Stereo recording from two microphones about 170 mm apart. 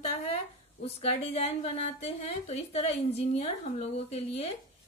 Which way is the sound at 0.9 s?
35° left (ahead or behind).